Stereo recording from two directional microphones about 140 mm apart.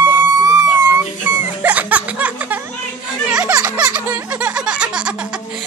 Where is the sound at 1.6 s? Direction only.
10° right (ahead or behind).